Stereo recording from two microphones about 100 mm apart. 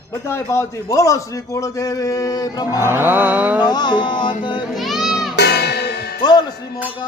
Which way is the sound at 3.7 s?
45° left (ahead or behind).